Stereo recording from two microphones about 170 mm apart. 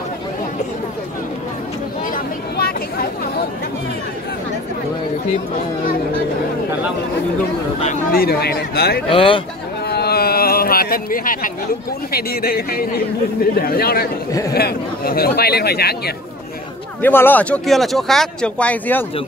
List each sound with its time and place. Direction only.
2.5 s a sound: 65° left (ahead or behind)
8.1 s speech: 65° left (ahead or behind)
9.1 s speech: 30° left (ahead or behind)
9.8 s a sound: 70° left (ahead or behind)
12.1 s speech: 65° left (ahead or behind)
17.0 s speech: 10° left (ahead or behind)